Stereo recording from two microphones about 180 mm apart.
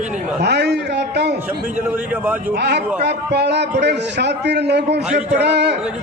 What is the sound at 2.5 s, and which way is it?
A man's voice, 65° right (ahead or behind).